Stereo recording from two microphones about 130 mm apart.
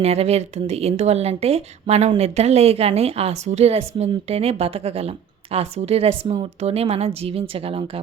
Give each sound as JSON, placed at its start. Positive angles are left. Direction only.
{"t": 0.0, "sound": "speech", "side_deg": -55}